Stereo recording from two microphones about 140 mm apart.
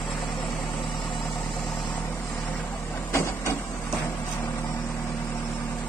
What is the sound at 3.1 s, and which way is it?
Printer, 20° left (ahead or behind).